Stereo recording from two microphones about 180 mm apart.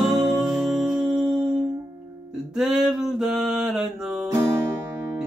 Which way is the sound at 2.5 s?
5° right (ahead or behind).